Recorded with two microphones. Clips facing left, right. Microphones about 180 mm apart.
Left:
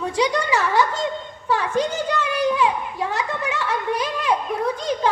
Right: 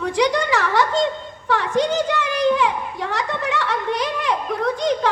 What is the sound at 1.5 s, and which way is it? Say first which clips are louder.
Speech: right 2 dB; 75° right (ahead or behind).